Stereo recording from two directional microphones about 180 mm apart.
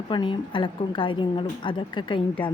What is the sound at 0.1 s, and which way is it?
Speech, 25° left (ahead or behind).